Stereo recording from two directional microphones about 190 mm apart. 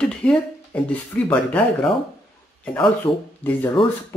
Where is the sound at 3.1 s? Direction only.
30° left (ahead or behind).